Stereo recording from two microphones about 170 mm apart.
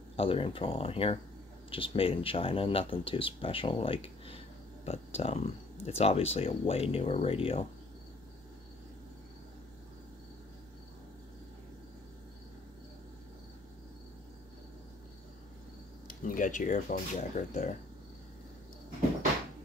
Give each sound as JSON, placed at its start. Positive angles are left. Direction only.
{"t": 0.1, "sound": "speech", "side_deg": 35}
{"t": 16.1, "sound": "speech", "side_deg": 50}